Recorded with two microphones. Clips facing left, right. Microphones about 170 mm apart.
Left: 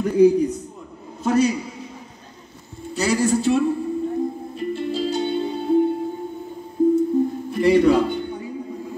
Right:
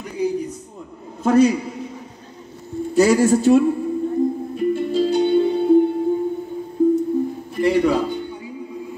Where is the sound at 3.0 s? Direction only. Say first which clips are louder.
Right 5 dB; 50° right (ahead or behind).